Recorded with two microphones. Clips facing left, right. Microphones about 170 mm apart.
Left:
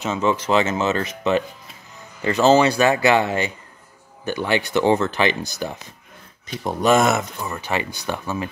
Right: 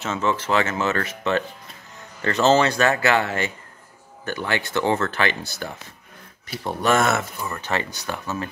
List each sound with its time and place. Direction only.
0.0 s speech: 15° left (ahead or behind)